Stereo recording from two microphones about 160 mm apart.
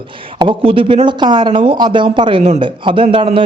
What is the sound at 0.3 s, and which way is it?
Speech, 35° right (ahead or behind).